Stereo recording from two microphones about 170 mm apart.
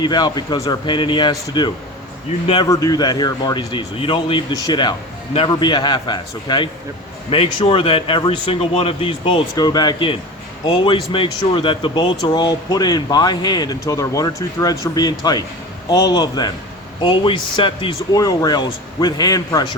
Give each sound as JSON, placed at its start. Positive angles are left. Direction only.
{"t": 0.0, "sound": "a man's voice", "side_deg": 25}